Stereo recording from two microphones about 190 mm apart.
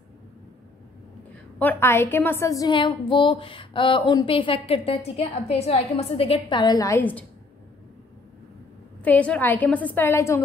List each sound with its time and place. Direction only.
1.6 s a woman's voice: 10° left (ahead or behind)
9.0 s a woman's voice: 5° left (ahead or behind)